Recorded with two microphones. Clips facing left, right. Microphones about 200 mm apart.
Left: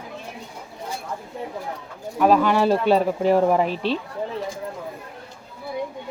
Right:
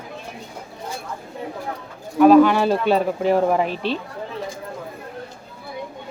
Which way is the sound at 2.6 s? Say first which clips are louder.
Even; 35° left (ahead or behind).